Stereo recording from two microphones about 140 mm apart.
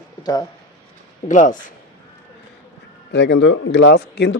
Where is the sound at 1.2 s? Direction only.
60° left (ahead or behind).